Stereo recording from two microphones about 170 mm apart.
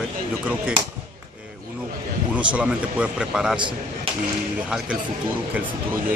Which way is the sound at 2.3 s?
5° right (ahead or behind).